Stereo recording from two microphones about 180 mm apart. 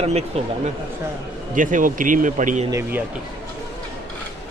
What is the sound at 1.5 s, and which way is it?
Speech, 45° right (ahead or behind).